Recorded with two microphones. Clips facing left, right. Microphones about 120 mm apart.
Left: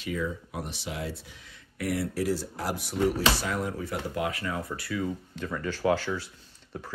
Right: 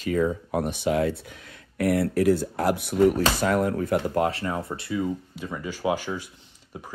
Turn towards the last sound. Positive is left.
turn(degrees=-15)  # may be behind; listen again after turning